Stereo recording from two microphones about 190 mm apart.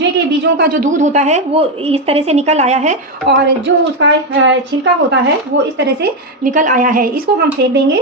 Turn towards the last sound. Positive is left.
turn(degrees=-65)  # may be behind; listen again after turning